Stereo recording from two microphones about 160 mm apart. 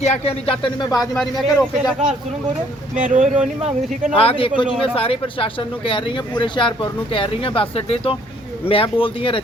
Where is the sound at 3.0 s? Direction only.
50° right (ahead or behind).